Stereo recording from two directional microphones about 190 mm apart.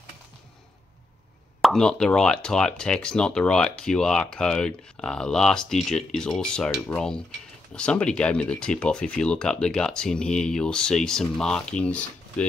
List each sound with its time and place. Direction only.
1.6 s speech: 5° left (ahead or behind)